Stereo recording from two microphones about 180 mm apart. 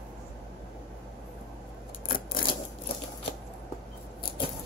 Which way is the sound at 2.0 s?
50° left (ahead or behind).